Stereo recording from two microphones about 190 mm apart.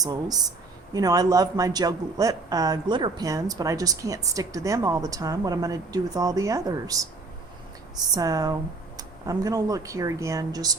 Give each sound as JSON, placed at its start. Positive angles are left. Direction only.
{"t": 0.0, "sound": "speech", "side_deg": -20}